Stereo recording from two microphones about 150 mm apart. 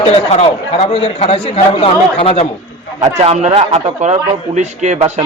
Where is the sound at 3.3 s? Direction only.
45° right (ahead or behind).